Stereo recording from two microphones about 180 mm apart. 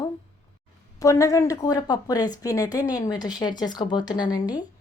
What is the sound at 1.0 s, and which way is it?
A woman's voice, 20° left (ahead or behind).